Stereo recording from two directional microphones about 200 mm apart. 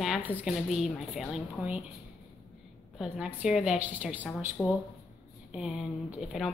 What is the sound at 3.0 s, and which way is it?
Speech, 5° right (ahead or behind).